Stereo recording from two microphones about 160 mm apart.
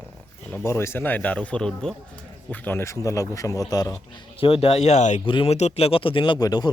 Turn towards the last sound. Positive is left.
turn(degrees=25)  # may be behind; listen again after turning